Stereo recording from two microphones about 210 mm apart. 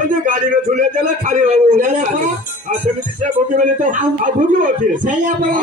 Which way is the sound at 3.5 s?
40° right (ahead or behind).